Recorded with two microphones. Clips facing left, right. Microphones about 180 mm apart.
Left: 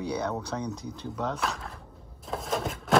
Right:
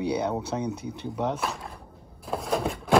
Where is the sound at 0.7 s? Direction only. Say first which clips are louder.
Right 3 dB; 65° right (ahead or behind).